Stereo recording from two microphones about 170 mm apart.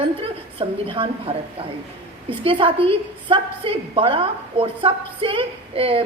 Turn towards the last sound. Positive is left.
turn(degrees=-35)  # may be behind; listen again after turning